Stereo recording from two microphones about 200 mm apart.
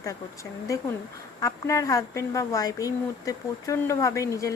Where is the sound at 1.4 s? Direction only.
15° left (ahead or behind).